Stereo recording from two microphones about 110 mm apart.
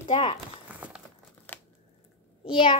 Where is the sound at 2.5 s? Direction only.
50° left (ahead or behind).